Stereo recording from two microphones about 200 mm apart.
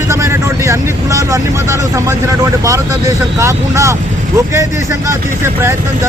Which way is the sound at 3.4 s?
15° right (ahead or behind).